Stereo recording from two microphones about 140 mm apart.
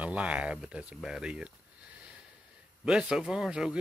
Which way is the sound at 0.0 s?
10° right (ahead or behind).